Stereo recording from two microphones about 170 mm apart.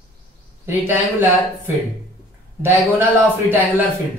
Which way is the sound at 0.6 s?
15° right (ahead or behind).